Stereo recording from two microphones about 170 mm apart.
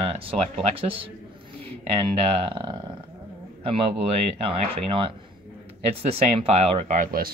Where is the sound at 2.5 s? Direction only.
25° right (ahead or behind).